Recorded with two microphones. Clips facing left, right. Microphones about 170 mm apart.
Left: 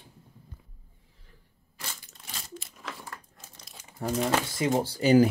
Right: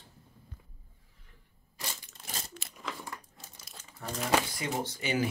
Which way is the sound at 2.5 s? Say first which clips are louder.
Left 5 dB; 65° right (ahead or behind).